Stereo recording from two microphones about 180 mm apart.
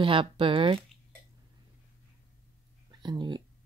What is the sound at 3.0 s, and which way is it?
Speech, 25° right (ahead or behind).